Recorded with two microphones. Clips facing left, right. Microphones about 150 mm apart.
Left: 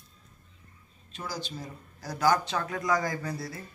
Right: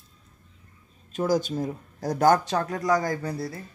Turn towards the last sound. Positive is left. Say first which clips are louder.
# right 4 dB
turn(degrees=-30)  # may be behind; listen again after turning